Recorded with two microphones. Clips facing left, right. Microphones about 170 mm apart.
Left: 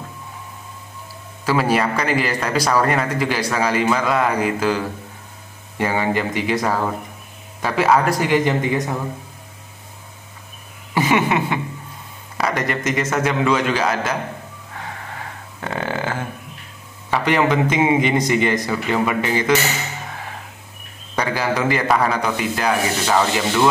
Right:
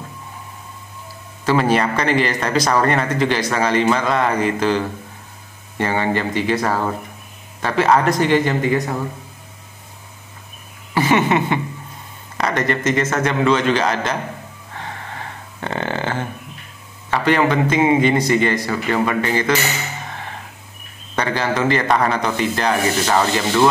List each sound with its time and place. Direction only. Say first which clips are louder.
1.4 s a man's voice: right 2 dB; 5° left (ahead or behind)
11.0 s a sound: right 2 dB; 10° left (ahead or behind)
12.4 s a man's voice: right 2 dB; 10° left (ahead or behind)
14.8 s a sound: right 1 dB; 5° left (ahead or behind)
17.1 s a man's voice: right 1 dB; 15° left (ahead or behind)
21.2 s speech: right 1 dB; 10° left (ahead or behind)